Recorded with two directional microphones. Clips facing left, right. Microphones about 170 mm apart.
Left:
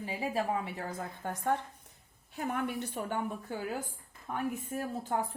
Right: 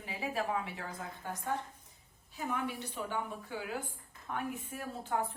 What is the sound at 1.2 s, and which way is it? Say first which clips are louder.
A woman's voice: left 5 dB; 50° left (ahead or behind).